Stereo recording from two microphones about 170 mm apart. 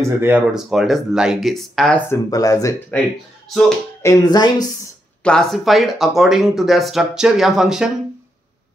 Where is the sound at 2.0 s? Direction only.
20° left (ahead or behind).